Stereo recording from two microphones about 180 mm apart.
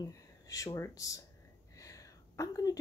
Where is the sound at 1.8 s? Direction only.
20° left (ahead or behind).